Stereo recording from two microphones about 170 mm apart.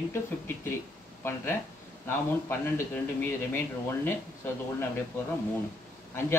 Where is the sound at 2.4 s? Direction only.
15° left (ahead or behind).